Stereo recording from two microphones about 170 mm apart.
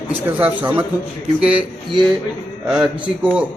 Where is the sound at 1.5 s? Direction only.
25° right (ahead or behind).